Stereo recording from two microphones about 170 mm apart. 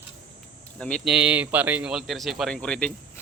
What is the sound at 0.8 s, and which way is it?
Speech, 5° left (ahead or behind).